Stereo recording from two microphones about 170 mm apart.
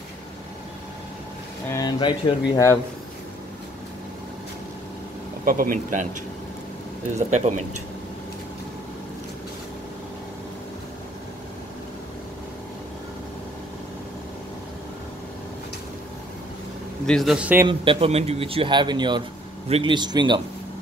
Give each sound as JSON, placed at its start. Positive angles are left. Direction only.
{"t": 1.7, "sound": "speech", "side_deg": 25}
{"t": 5.4, "sound": "speech", "side_deg": -55}
{"t": 7.2, "sound": "speech", "side_deg": -45}
{"t": 17.0, "sound": "a man's voice", "side_deg": 0}
{"t": 17.6, "sound": "speech", "side_deg": -35}